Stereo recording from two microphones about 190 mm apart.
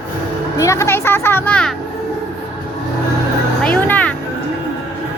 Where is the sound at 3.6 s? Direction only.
10° left (ahead or behind).